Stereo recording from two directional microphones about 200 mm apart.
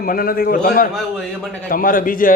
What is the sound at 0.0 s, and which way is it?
Speech, 45° left (ahead or behind).